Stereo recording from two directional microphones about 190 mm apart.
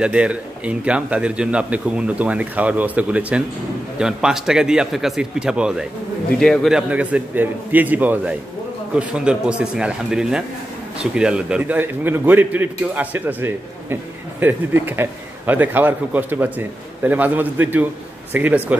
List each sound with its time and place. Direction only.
0.0 s a man's voice: 5° right (ahead or behind)